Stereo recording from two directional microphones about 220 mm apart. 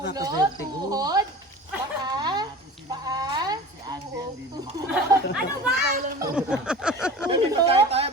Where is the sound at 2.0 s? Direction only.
20° right (ahead or behind).